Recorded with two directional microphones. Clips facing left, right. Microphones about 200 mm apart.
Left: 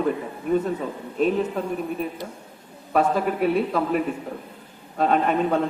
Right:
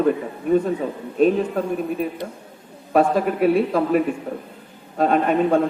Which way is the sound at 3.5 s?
55° right (ahead or behind).